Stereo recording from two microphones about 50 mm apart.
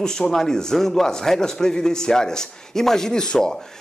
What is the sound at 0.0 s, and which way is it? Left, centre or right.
A man's voice, centre.